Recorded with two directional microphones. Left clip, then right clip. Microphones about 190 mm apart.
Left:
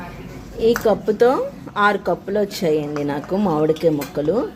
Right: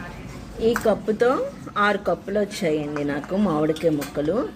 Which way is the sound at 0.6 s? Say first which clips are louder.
Left 4 dB; 15° left (ahead or behind).